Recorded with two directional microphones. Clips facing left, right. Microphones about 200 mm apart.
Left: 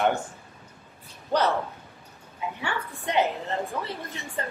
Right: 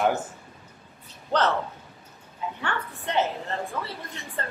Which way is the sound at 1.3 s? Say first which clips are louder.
Even; 10° left (ahead or behind).